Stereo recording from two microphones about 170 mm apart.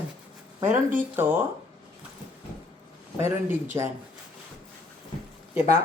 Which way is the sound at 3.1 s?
15° right (ahead or behind).